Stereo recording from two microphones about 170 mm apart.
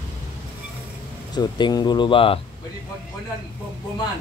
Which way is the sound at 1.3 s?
25° left (ahead or behind).